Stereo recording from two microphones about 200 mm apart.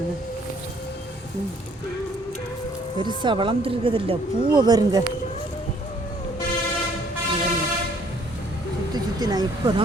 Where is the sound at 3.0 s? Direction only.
25° right (ahead or behind).